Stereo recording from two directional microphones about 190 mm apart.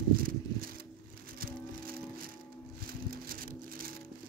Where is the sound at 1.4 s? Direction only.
50° right (ahead or behind).